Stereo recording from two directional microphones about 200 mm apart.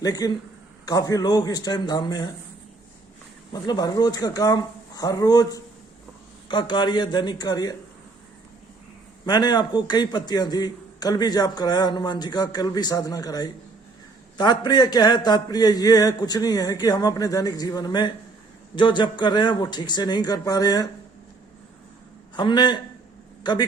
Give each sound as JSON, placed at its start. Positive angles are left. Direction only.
{"t": 0.0, "sound": "a man's voice", "side_deg": 20}
{"t": 3.5, "sound": "a man's voice", "side_deg": 20}
{"t": 9.2, "sound": "a man's voice", "side_deg": 20}
{"t": 22.4, "sound": "a man's voice", "side_deg": 20}